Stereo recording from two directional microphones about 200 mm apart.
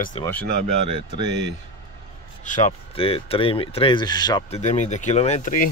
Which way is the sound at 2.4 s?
40° left (ahead or behind).